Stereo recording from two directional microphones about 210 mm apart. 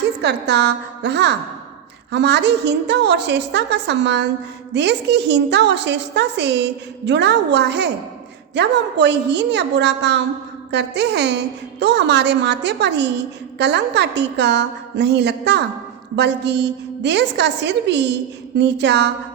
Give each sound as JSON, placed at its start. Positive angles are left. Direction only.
{"t": 0.2, "sound": "a woman's voice", "side_deg": -55}